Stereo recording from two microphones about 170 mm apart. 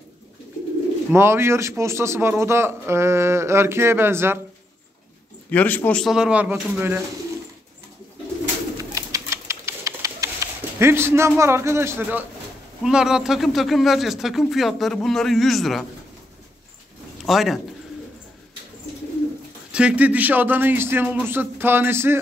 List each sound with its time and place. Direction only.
1.1 s a man's voice: 15° right (ahead or behind)
5.5 s speech: 10° left (ahead or behind); by 7.0 s 10° right (ahead or behind)
8.9 s pigeon: 20° right (ahead or behind)
12.8 s speech: 5° right (ahead or behind)
17.2 s a man's voice: centre (ahead or behind)
19.7 s a man's voice: 5° right (ahead or behind)